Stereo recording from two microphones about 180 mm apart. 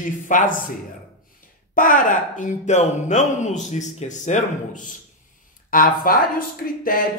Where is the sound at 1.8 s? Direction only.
50° left (ahead or behind).